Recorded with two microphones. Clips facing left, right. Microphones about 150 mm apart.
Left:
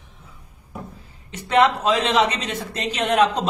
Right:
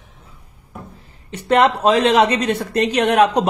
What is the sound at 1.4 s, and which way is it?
A man's voice, 55° right (ahead or behind).